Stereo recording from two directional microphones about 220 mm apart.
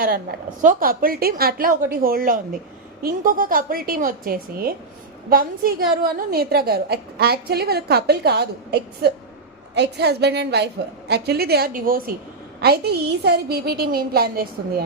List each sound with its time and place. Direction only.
0.0 s a woman's voice: 40° right (ahead or behind)